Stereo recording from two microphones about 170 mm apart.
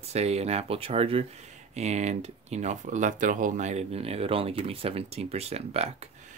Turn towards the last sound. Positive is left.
turn(degrees=-40)  # may be behind; listen again after turning